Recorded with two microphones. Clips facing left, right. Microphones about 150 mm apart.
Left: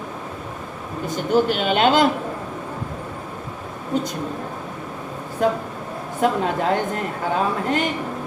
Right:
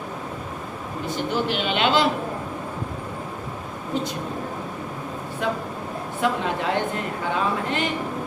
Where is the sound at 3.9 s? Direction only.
45° left (ahead or behind).